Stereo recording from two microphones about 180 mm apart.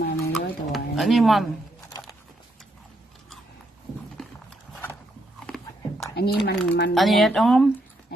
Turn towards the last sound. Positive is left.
turn(degrees=0)  # may be behind; listen again after turning